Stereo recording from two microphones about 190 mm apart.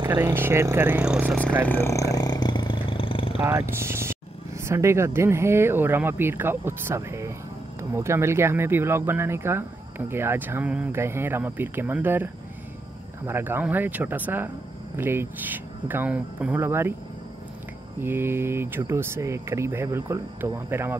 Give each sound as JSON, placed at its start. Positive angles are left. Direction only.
{"t": 0.1, "sound": "speech", "side_deg": -10}
{"t": 1.7, "sound": "a sound", "side_deg": 15}
{"t": 3.3, "sound": "speech", "side_deg": -15}
{"t": 18.0, "sound": "speech", "side_deg": -10}